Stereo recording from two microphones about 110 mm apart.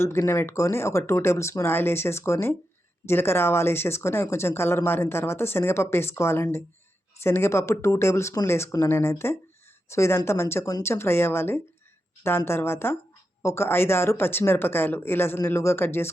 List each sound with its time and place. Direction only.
0.0 s speech: 20° left (ahead or behind)